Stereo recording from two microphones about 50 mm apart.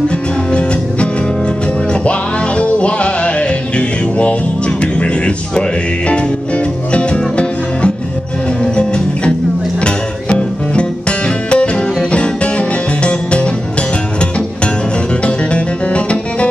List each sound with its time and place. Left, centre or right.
2.0 s music: left
15.2 s music: left